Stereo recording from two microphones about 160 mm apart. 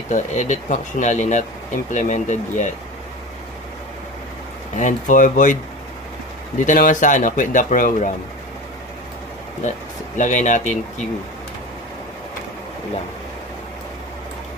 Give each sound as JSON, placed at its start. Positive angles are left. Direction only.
{"t": 0.1, "sound": "speech", "side_deg": 50}
{"t": 4.8, "sound": "speech", "side_deg": 50}
{"t": 6.6, "sound": "speech", "side_deg": 55}
{"t": 9.6, "sound": "speech", "side_deg": 50}